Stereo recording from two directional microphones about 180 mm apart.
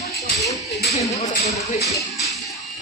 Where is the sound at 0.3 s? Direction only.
20° left (ahead or behind).